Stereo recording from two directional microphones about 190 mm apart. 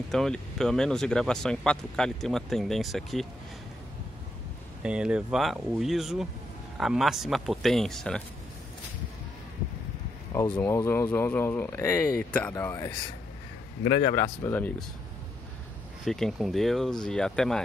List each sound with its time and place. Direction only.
0.1 s speech: centre (ahead or behind)
4.8 s speech: 5° right (ahead or behind)
10.3 s speech: 20° left (ahead or behind)
13.8 s speech: 25° left (ahead or behind); by 14.9 s 10° left (ahead or behind)
16.1 s speech: centre (ahead or behind)